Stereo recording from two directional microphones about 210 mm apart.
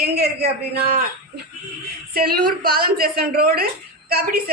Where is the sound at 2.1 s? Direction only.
45° right (ahead or behind).